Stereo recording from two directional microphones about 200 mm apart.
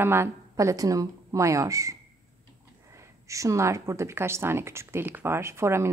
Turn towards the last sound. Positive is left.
turn(degrees=-15)  # may be behind; listen again after turning